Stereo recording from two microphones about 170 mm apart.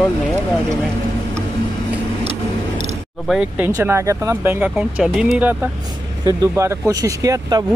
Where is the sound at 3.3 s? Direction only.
5° right (ahead or behind).